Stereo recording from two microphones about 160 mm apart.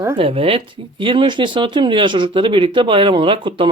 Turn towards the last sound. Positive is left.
turn(degrees=-30)  # may be behind; listen again after turning